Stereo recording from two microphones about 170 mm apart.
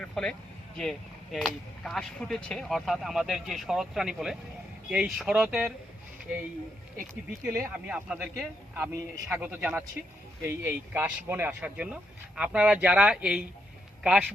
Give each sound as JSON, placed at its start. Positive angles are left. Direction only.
{"t": 0.0, "sound": "speech", "side_deg": 5}
{"t": 7.5, "sound": "speech", "side_deg": -10}